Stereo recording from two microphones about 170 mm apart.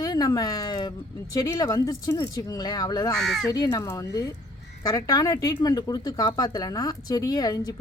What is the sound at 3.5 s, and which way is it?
Speech, 20° left (ahead or behind).